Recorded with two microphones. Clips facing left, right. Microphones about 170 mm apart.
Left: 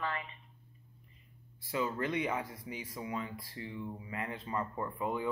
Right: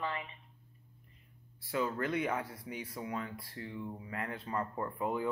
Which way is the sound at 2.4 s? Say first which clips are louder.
Even; centre (ahead or behind).